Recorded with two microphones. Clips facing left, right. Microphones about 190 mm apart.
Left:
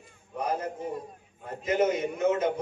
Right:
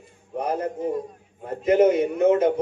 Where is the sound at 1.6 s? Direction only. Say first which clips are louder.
Right 8 dB; 60° right (ahead or behind).